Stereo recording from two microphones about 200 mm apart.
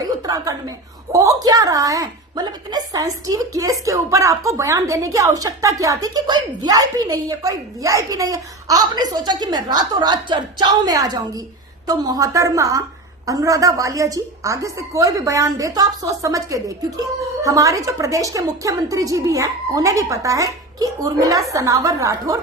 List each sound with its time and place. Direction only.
0.0 s chuckle: 20° right (ahead or behind)
1.1 s a woman's voice: 15° right (ahead or behind)